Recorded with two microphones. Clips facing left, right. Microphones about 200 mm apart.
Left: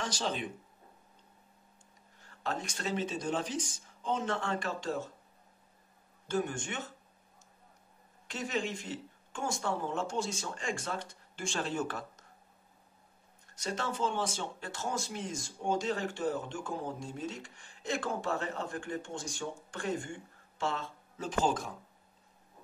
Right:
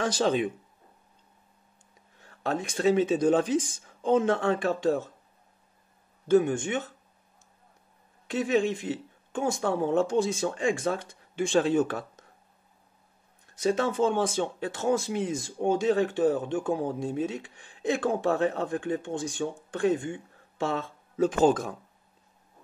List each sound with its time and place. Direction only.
2.2 s speech: 55° right (ahead or behind)
6.2 s speech: 55° right (ahead or behind)
8.5 s speech: 55° right (ahead or behind)
13.6 s speech: 55° right (ahead or behind)